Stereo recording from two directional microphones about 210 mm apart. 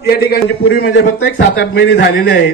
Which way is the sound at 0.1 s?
45° left (ahead or behind).